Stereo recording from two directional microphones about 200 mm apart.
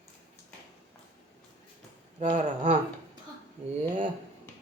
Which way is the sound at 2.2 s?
35° right (ahead or behind).